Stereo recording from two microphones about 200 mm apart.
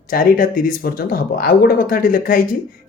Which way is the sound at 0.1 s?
45° left (ahead or behind).